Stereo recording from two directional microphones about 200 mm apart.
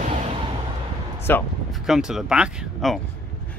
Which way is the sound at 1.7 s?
Centre (ahead or behind).